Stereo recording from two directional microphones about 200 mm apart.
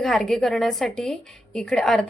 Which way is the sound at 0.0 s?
Centre (ahead or behind).